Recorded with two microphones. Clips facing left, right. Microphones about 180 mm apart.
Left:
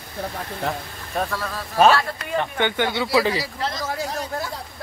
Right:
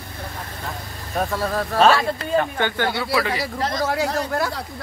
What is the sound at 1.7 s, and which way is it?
Speech, 65° right (ahead or behind).